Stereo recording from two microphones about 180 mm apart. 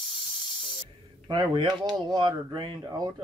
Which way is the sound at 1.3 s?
25° right (ahead or behind).